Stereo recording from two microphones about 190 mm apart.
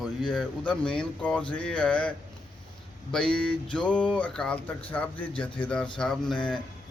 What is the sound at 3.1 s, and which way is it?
Speech, 5° left (ahead or behind).